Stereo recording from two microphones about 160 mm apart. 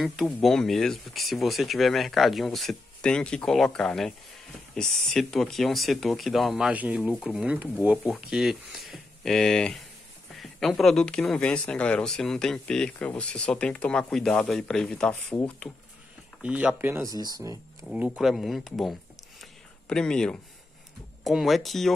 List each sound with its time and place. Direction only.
0.0 s speech: centre (ahead or behind)
16.4 s speech: 10° right (ahead or behind)
17.8 s speech: 5° right (ahead or behind)